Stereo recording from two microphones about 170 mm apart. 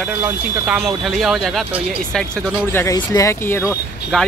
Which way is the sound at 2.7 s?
15° left (ahead or behind).